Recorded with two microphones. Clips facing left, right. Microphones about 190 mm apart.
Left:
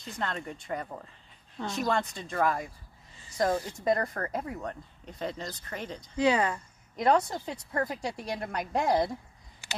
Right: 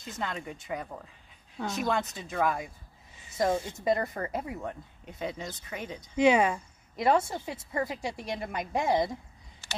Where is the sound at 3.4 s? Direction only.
20° right (ahead or behind).